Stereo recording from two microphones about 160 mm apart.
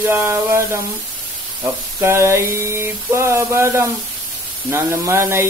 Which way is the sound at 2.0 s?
15° right (ahead or behind).